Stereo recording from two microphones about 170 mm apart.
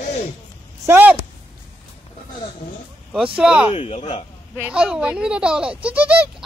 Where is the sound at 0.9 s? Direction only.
10° right (ahead or behind).